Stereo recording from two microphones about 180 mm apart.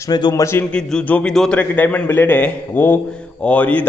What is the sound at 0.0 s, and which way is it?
A man's voice, 25° left (ahead or behind).